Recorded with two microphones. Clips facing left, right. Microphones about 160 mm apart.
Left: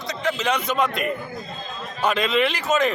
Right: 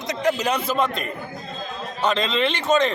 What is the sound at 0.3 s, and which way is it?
Speech, 10° right (ahead or behind).